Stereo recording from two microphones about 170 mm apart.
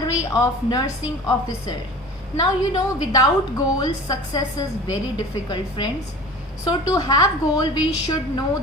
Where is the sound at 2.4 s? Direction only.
25° left (ahead or behind).